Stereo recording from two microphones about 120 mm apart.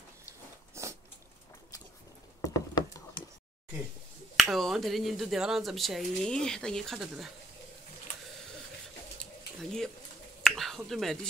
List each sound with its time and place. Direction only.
0.8 s a sound: 25° right (ahead or behind)
2.4 s a sound: 30° left (ahead or behind)
4.4 s speech: centre (ahead or behind)
9.2 s bird: 5° left (ahead or behind)
10.4 s finger snapping: 5° left (ahead or behind)
10.9 s speech: centre (ahead or behind)